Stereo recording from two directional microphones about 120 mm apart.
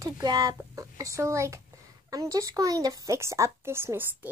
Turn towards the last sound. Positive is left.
turn(degrees=-20)  # may be behind; listen again after turning